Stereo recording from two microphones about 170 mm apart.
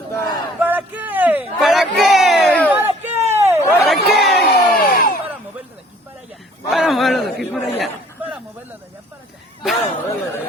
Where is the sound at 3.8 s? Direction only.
Centre (ahead or behind).